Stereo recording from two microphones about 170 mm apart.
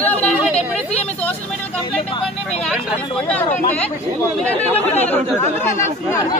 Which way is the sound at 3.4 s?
45° left (ahead or behind).